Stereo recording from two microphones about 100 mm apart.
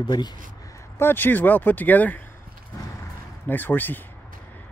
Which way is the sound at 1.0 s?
20° left (ahead or behind).